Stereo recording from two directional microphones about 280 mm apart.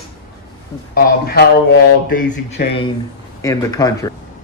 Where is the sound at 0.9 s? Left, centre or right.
Left.